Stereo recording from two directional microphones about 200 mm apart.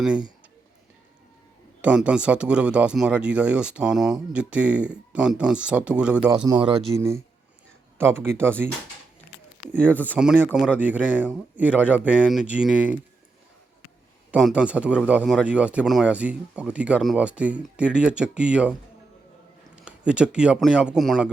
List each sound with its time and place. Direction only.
0.0 s speech: 5° right (ahead or behind)
1.8 s speech: 5° right (ahead or behind)
6.3 s speech: 25° right (ahead or behind)
7.9 s a man's voice: 10° right (ahead or behind)
9.7 s a man's voice: 10° right (ahead or behind)
14.3 s a man's voice: 5° right (ahead or behind)
19.7 s speech: 5° right (ahead or behind)